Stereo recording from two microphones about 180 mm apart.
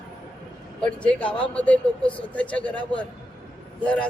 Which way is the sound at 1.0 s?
5° left (ahead or behind).